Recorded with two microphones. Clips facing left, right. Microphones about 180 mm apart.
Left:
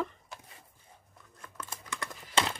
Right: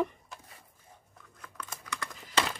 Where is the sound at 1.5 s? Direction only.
25° left (ahead or behind).